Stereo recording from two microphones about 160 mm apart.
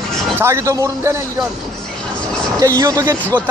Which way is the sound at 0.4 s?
15° right (ahead or behind).